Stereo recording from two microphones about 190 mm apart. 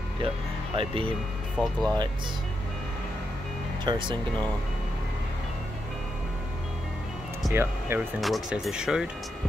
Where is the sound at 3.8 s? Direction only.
25° right (ahead or behind).